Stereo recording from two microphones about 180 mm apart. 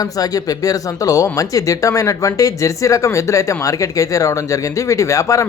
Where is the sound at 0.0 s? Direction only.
20° left (ahead or behind).